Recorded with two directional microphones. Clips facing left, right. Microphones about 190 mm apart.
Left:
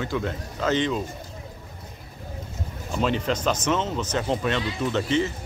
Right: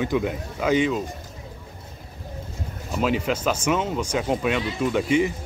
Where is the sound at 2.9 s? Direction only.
5° right (ahead or behind).